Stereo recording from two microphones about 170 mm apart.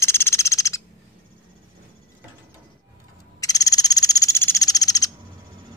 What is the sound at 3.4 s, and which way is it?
Frog, 20° left (ahead or behind).